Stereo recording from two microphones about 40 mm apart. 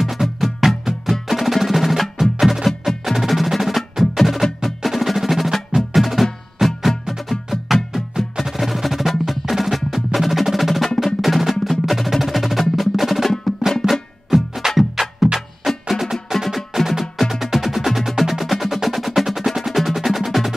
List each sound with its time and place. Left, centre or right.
0.0 s music: centre
1.3 s percussion: centre
5.8 s music: centre
9.9 s percussion: centre
11.1 s drum: centre
11.8 s percussion: centre
13.8 s music: right
14.7 s music: centre